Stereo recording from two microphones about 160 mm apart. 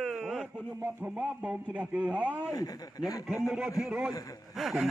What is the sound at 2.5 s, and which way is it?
Speech, 25° left (ahead or behind).